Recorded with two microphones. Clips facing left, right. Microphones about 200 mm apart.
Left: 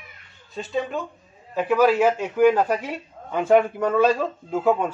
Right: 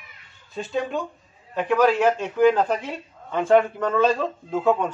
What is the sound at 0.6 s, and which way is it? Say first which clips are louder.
A man's voice: even; centre (ahead or behind).